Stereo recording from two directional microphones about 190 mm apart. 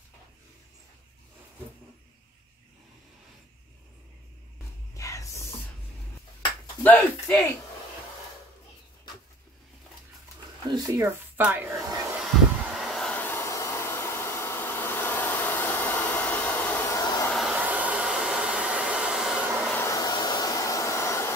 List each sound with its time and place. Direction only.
4.9 s a sound: 15° left (ahead or behind)
6.8 s speech: 10° left (ahead or behind)
10.7 s speech: 15° right (ahead or behind)
12.7 s hair dryer: centre (ahead or behind); by 17.3 s 20° left (ahead or behind)
17.3 s hair dryer: centre (ahead or behind)
19.7 s hair dryer: 15° left (ahead or behind)